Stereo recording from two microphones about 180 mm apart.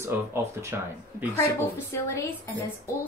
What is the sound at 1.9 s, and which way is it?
Speech, 15° left (ahead or behind).